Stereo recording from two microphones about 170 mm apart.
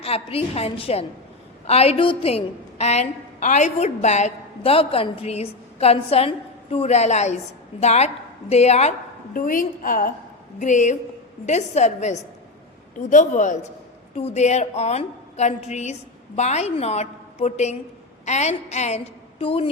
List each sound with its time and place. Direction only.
0.0 s a woman's voice: 35° left (ahead or behind)
9.3 s a woman's voice: 50° left (ahead or behind); by 19.7 s 35° left (ahead or behind)